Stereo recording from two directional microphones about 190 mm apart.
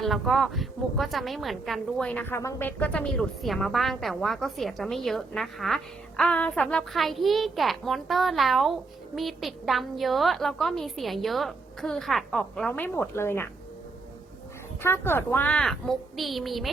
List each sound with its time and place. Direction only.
0.0 s speech: centre (ahead or behind)
14.8 s speech: 10° left (ahead or behind)